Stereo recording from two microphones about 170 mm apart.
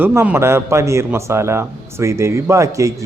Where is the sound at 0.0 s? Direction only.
15° right (ahead or behind).